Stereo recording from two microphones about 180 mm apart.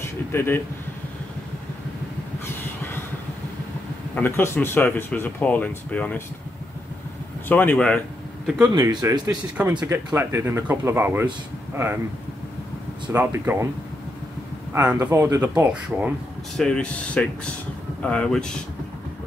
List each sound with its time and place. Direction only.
0.0 s a sound: 15° left (ahead or behind)
4.1 s speech: 10° left (ahead or behind)
7.4 s speech: 10° left (ahead or behind)
8.6 s speech: 25° right (ahead or behind)
9.6 s speech: 10° right (ahead or behind)
13.1 s speech: 10° right (ahead or behind)
14.7 s speech: 15° right (ahead or behind)
16.5 s speech: 5° left (ahead or behind)